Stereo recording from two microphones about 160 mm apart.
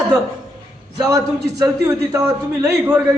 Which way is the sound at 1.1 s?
20° right (ahead or behind).